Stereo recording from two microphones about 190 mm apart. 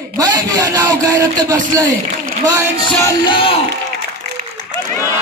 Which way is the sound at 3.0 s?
25° left (ahead or behind).